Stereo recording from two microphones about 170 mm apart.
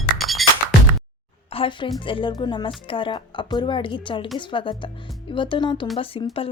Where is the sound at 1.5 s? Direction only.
30° left (ahead or behind).